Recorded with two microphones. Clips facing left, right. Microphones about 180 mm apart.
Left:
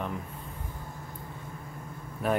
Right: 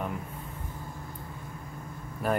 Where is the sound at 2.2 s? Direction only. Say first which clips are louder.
Left 1 dB; centre (ahead or behind).